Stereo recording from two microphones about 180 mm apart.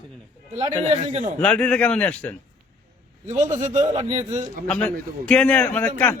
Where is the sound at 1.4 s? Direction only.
5° left (ahead or behind).